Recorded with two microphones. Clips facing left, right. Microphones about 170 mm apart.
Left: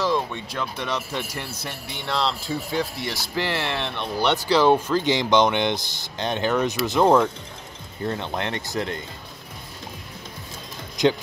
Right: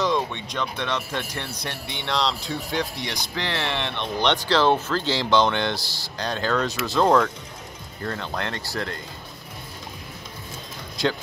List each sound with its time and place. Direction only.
0.0 s speech: 5° left (ahead or behind); by 9.0 s 20° left (ahead or behind)
11.0 s speech: 20° left (ahead or behind)